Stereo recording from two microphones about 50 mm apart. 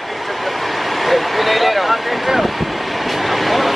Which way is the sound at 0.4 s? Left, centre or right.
Centre.